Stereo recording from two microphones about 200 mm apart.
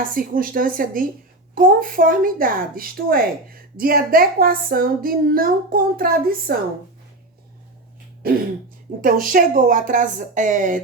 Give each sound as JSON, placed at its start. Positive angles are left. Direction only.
{"t": 0.0, "sound": "a woman's voice", "side_deg": -45}
{"t": 8.2, "sound": "a woman's voice", "side_deg": -50}